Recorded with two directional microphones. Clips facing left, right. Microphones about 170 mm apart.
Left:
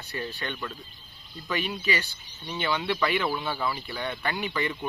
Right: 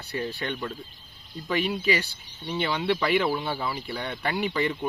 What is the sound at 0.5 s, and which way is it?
Speech, 40° right (ahead or behind).